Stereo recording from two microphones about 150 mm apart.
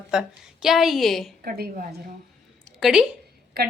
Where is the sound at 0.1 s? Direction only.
5° right (ahead or behind).